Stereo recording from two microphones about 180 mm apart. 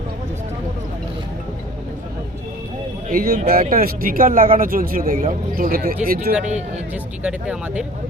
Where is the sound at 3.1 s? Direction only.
55° right (ahead or behind).